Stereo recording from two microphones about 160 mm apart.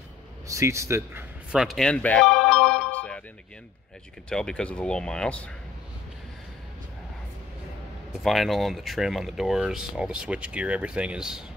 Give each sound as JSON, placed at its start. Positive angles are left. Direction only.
{"t": 0.5, "sound": "speech", "side_deg": -20}
{"t": 1.5, "sound": "sheep", "side_deg": -5}
{"t": 4.3, "sound": "speech", "side_deg": 5}
{"t": 8.2, "sound": "speech", "side_deg": 0}